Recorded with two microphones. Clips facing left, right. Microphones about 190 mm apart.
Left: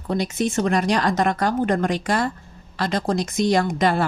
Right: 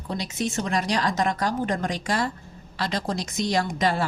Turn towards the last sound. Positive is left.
turn(degrees=55)  # may be behind; listen again after turning